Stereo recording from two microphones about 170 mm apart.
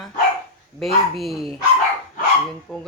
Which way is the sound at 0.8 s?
Centre (ahead or behind).